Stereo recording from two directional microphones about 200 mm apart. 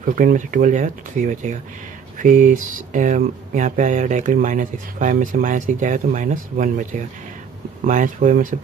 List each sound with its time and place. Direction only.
0.0 s speech: 40° right (ahead or behind)